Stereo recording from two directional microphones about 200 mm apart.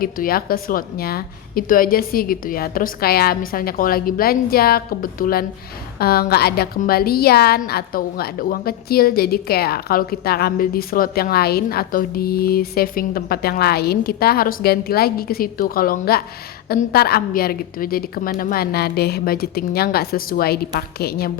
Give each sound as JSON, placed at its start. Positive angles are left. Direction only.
{"t": 0.0, "sound": "a woman's voice", "side_deg": 45}